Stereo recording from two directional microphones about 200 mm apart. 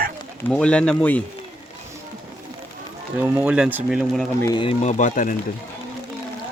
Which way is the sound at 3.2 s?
5° right (ahead or behind).